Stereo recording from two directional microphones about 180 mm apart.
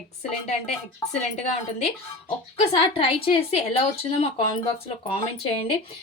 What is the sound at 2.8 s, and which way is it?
Speech, 30° left (ahead or behind).